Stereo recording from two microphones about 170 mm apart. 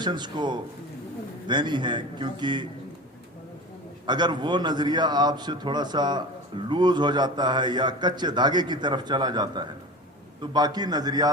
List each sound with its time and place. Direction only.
0.0 s a man's voice: 25° right (ahead or behind)
4.0 s a man's voice: 25° right (ahead or behind)